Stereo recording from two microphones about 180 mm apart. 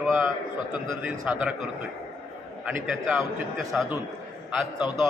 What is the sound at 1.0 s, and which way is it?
Speech, 5° right (ahead or behind).